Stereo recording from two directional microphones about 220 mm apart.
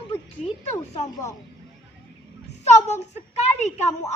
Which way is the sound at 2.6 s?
30° left (ahead or behind).